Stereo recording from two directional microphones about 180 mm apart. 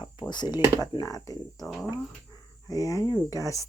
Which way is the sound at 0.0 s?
25° left (ahead or behind).